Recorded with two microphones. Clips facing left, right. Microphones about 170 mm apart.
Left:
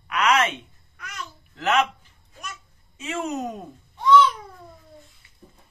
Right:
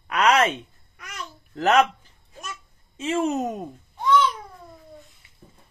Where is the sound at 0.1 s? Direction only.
35° right (ahead or behind).